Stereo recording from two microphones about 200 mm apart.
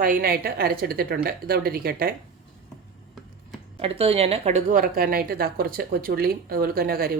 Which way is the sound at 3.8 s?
30° right (ahead or behind).